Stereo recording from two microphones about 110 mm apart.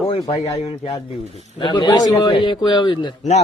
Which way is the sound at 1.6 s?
40° left (ahead or behind).